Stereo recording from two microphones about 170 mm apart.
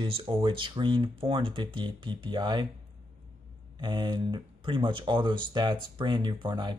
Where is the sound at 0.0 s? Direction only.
30° right (ahead or behind).